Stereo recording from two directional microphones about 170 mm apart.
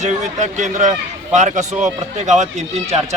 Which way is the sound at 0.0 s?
45° right (ahead or behind).